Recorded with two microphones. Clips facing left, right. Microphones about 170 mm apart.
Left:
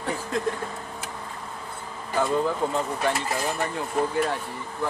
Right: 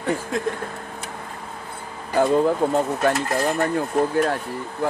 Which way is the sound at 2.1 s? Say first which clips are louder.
Right 6 dB; 50° right (ahead or behind).